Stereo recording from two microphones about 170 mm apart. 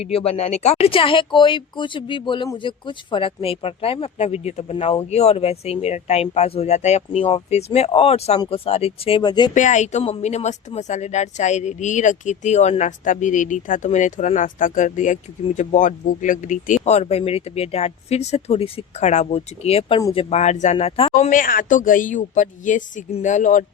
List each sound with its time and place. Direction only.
0.0 s speech: 35° left (ahead or behind)
9.6 s speech: 45° left (ahead or behind)
21.2 s speech: 55° left (ahead or behind)